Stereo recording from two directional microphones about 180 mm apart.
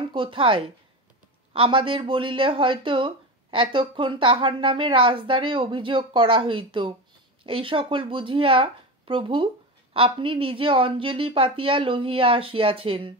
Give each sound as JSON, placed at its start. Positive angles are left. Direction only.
{"t": 0.1, "sound": "speech", "side_deg": -30}